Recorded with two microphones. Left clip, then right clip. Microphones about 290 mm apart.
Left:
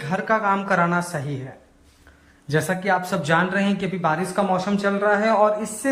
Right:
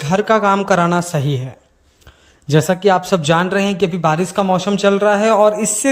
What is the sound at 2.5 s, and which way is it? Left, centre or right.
Speech, right.